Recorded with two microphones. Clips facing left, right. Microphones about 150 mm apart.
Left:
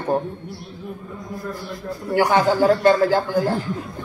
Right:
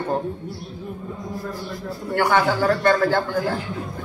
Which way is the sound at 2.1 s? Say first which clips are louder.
Left 2 dB; 15° left (ahead or behind).